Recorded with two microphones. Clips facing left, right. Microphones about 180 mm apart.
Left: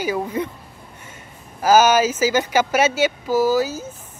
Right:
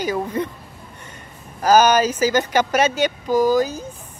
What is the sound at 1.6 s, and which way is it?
Speech, 10° left (ahead or behind).